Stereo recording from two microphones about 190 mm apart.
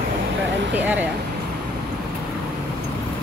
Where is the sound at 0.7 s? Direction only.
10° right (ahead or behind).